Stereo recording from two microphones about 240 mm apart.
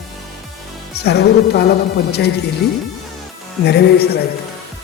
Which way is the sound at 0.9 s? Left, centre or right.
Left.